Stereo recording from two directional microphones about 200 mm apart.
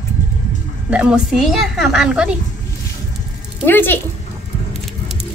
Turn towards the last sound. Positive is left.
turn(degrees=10)  # may be behind; listen again after turning